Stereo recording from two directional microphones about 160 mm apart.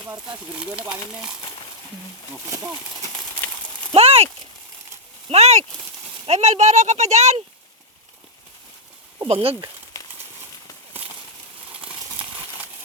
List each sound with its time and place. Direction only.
0.8 s speech: 5° right (ahead or behind)
3.9 s speech: 40° right (ahead or behind)
5.3 s speech: 45° right (ahead or behind)
9.2 s speech: 40° right (ahead or behind)
11.7 s crumpling: 10° right (ahead or behind)